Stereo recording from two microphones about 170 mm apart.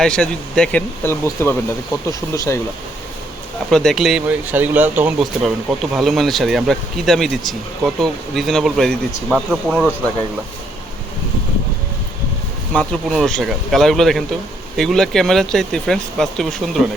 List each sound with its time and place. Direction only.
0.0 s speech: 5° left (ahead or behind)
3.7 s speech: centre (ahead or behind)
12.7 s speech: 5° left (ahead or behind)